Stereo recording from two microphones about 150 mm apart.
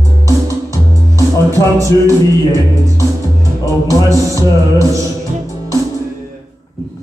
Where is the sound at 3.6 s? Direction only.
20° right (ahead or behind).